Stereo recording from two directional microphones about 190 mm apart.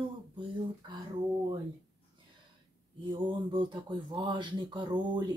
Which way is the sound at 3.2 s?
25° right (ahead or behind).